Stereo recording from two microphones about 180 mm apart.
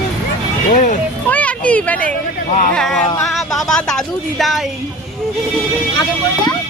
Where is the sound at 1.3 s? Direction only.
10° left (ahead or behind).